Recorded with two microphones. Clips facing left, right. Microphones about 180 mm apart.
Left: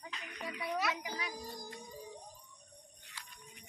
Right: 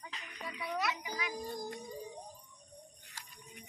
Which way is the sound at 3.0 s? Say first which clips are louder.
Right 1 dB; 45° right (ahead or behind).